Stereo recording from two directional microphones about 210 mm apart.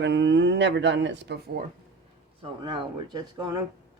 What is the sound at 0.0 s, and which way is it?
Speech, 55° right (ahead or behind).